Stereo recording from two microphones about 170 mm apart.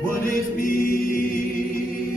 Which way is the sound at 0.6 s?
55° left (ahead or behind).